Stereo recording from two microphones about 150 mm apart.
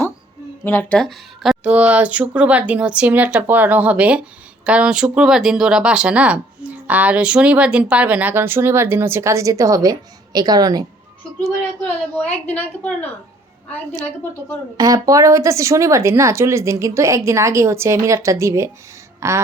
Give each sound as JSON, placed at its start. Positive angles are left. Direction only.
{"t": 0.6, "sound": "speech", "side_deg": 15}
{"t": 12.1, "sound": "a woman's voice", "side_deg": 10}
{"t": 14.8, "sound": "speech", "side_deg": -25}